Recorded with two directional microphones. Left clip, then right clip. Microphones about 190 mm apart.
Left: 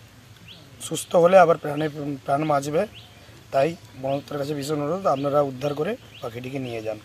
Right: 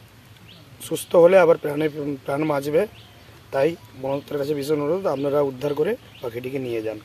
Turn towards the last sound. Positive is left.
turn(degrees=-15)  # may be behind; listen again after turning